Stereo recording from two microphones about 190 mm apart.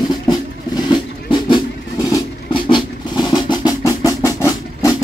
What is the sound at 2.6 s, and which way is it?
Percussion, 25° left (ahead or behind).